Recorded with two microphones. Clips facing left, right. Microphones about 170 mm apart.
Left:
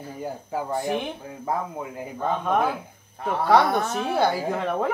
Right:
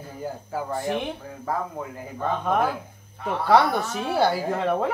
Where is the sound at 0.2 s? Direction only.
20° left (ahead or behind).